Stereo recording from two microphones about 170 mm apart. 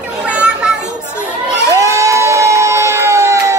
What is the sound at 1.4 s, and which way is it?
Crowd, 20° right (ahead or behind).